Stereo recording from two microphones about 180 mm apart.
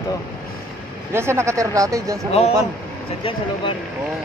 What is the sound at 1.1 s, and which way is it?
Speech, 15° right (ahead or behind).